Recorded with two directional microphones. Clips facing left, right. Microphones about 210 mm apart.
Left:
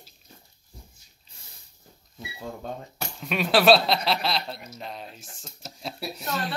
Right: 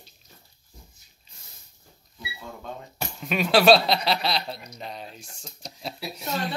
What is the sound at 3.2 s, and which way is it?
Speech, centre (ahead or behind).